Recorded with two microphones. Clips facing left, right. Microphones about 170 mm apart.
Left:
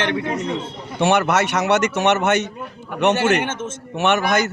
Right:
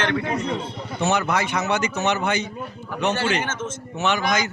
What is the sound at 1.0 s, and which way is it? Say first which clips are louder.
Speech: left 5 dB; 90° left.